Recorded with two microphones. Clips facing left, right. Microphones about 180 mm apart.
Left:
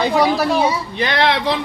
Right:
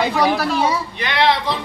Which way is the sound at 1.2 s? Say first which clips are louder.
Right 1 dB; 70° left (ahead or behind).